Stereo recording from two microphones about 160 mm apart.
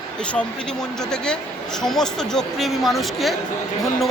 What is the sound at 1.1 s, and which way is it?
A woman's voice, 5° left (ahead or behind).